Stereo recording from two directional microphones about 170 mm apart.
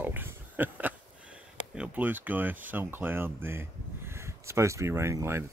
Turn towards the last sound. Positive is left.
turn(degrees=-15)  # may be behind; listen again after turning